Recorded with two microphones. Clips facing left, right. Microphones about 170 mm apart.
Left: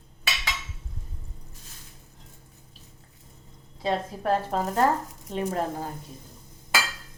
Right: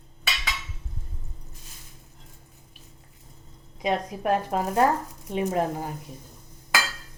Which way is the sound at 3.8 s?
15° right (ahead or behind).